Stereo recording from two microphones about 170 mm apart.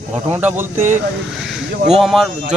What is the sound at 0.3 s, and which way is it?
Speech, 10° right (ahead or behind).